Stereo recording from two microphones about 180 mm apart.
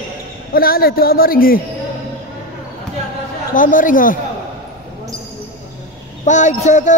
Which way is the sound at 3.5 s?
50° left (ahead or behind).